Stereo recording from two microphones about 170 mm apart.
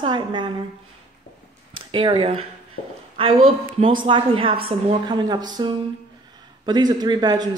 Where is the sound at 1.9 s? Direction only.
30° right (ahead or behind).